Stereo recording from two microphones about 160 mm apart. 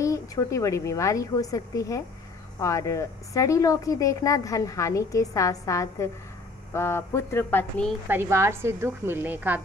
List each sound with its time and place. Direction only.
0.0 s speech: 20° left (ahead or behind)
8.1 s a woman's voice: 15° right (ahead or behind)